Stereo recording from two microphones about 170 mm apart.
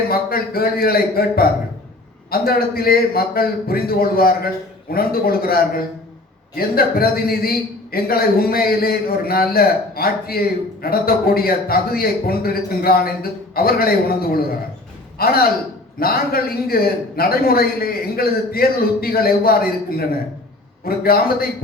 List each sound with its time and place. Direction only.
0.1 s a man's voice: 60° left (ahead or behind)
20.8 s a man's voice: 60° left (ahead or behind)